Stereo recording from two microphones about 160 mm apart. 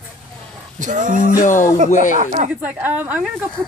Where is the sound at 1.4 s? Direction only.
55° left (ahead or behind).